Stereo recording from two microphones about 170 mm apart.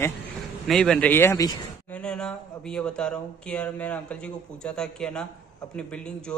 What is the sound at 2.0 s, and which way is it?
Speech, 5° left (ahead or behind).